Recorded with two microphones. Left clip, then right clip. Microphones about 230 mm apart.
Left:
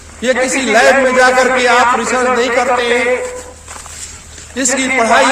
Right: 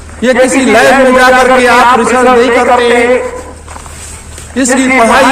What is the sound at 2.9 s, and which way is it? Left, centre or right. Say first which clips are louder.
Speech: right 6 dB; right.